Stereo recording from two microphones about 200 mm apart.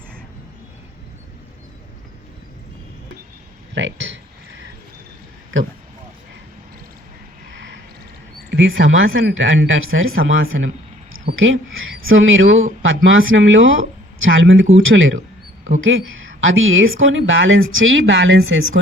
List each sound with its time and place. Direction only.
3.8 s speech: 65° right (ahead or behind)
5.5 s speech: 70° right (ahead or behind)
8.4 s speech: 70° right (ahead or behind)